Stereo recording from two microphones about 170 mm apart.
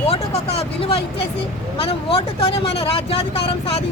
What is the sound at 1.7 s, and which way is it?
Speech, 35° left (ahead or behind).